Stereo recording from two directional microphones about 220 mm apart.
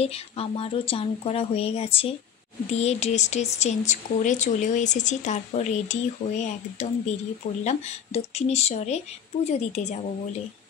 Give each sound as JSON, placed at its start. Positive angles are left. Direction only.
{"t": 0.0, "sound": "speech", "side_deg": 25}